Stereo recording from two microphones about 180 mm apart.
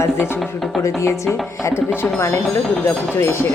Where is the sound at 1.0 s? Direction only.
15° left (ahead or behind).